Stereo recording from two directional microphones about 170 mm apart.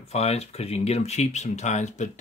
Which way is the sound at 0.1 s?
40° left (ahead or behind).